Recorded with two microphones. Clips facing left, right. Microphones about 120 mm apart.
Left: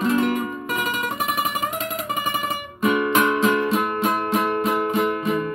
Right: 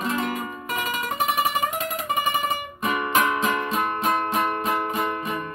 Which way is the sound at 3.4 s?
30° left (ahead or behind).